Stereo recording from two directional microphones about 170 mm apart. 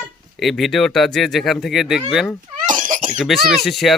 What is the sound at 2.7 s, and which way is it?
Cough, 50° right (ahead or behind).